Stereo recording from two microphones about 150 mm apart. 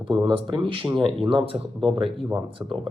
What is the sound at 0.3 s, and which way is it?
Speech, 30° right (ahead or behind).